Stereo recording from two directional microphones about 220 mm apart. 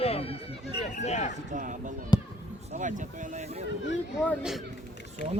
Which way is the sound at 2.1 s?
20° left (ahead or behind).